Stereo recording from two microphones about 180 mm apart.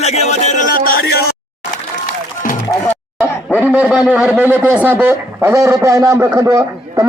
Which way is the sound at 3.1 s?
10° right (ahead or behind).